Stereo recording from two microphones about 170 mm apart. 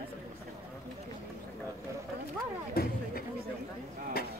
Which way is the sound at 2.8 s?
65° left (ahead or behind).